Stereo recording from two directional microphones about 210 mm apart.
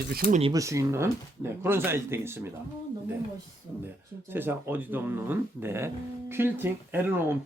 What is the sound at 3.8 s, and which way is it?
Speech, 10° right (ahead or behind).